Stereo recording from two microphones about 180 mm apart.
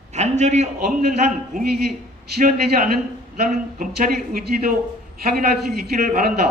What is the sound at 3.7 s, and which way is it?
A man's voice, 55° right (ahead or behind).